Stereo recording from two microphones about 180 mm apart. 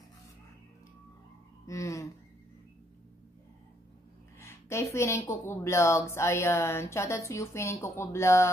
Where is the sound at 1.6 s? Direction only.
15° left (ahead or behind).